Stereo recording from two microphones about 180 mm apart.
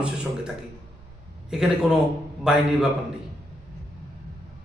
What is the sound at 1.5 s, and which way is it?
Speech, 5° right (ahead or behind).